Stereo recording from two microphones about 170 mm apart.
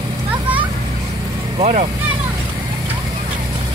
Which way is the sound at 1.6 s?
40° right (ahead or behind).